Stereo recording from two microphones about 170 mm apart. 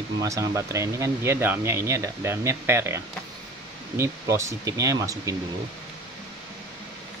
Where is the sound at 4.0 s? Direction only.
20° right (ahead or behind).